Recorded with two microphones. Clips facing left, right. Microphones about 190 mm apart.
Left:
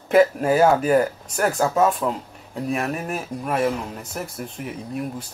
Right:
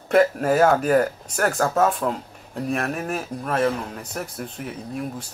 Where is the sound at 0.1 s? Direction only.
Centre (ahead or behind).